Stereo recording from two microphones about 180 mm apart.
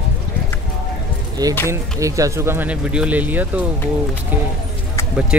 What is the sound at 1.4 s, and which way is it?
A man's voice, 20° right (ahead or behind).